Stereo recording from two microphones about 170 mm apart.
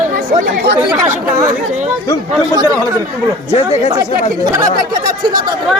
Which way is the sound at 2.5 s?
20° right (ahead or behind).